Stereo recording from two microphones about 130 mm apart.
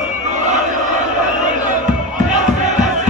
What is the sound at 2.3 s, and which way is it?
Battle cry, 70° right (ahead or behind).